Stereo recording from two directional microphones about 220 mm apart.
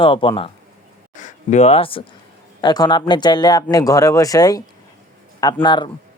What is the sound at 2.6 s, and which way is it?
Speech, 20° left (ahead or behind).